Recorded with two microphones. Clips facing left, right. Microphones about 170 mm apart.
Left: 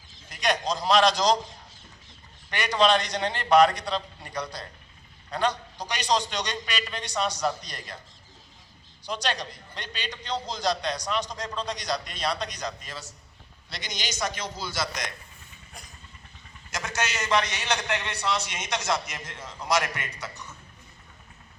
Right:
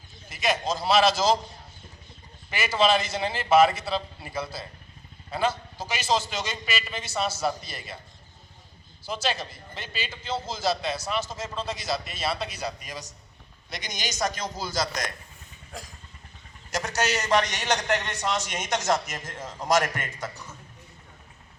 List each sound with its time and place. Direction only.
0.3 s a man's voice: 5° right (ahead or behind)
2.5 s a man's voice: 5° right (ahead or behind)
9.0 s a man's voice: 5° right (ahead or behind)
13.7 s a man's voice: 45° right (ahead or behind)
16.7 s a man's voice: 40° right (ahead or behind)